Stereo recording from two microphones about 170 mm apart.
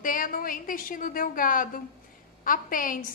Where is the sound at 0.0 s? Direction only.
55° left (ahead or behind).